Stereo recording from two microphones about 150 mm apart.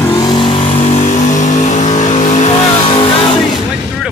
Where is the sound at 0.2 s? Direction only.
30° left (ahead or behind); by 2.5 s 50° left (ahead or behind).